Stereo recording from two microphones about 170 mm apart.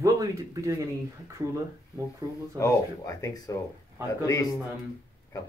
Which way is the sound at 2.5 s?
20° left (ahead or behind).